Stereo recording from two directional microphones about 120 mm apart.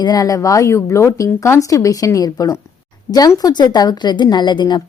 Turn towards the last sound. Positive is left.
turn(degrees=40)  # may be behind; listen again after turning